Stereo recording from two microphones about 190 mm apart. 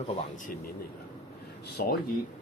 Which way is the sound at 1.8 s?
50° left (ahead or behind).